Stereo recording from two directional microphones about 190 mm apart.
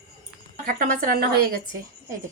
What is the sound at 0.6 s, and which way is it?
Speech, 45° right (ahead or behind).